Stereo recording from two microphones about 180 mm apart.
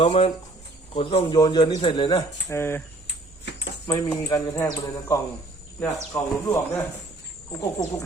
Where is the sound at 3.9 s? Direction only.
20° left (ahead or behind).